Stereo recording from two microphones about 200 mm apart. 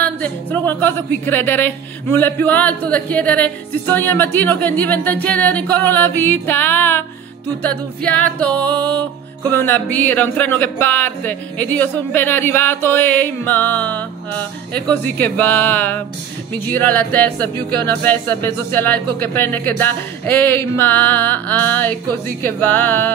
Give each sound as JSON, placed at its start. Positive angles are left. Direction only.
{"t": 0.0, "sound": "speech", "side_deg": 10}